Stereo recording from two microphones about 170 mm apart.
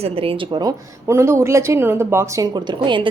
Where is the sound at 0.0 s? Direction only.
35° right (ahead or behind).